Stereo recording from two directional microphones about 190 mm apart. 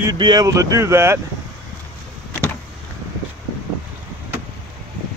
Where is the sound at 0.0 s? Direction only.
20° right (ahead or behind).